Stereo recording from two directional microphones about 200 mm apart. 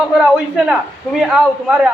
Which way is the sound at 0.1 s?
5° right (ahead or behind).